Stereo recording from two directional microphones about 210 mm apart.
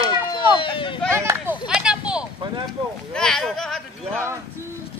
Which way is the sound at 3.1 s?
Centre (ahead or behind).